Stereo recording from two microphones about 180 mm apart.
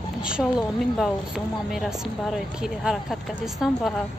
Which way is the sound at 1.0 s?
Centre (ahead or behind).